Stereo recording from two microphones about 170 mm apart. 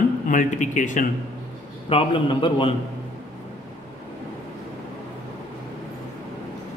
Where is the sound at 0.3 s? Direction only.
50° left (ahead or behind).